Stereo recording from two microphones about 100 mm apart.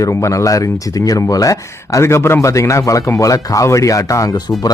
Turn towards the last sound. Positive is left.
turn(degrees=30)  # may be behind; listen again after turning